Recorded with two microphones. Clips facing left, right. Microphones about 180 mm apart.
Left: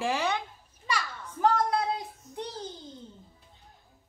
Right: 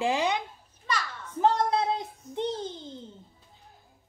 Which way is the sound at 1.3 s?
25° right (ahead or behind).